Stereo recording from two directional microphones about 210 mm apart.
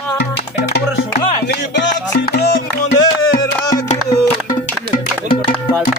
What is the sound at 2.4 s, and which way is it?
Music, 45° left (ahead or behind).